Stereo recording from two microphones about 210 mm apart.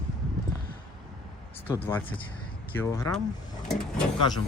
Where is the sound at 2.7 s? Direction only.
15° left (ahead or behind).